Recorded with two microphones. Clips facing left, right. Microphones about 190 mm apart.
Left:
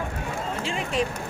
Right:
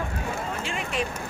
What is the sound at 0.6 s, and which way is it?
Speech, 30° left (ahead or behind).